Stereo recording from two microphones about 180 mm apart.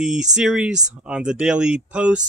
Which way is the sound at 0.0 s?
5° right (ahead or behind).